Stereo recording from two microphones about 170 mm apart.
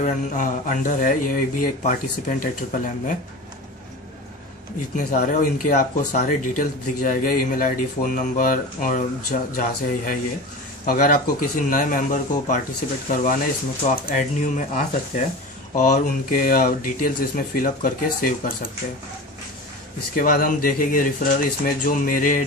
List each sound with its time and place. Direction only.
0.0 s speech: 50° left (ahead or behind)
4.9 s speech: 45° left (ahead or behind)
20.2 s speech: 55° left (ahead or behind)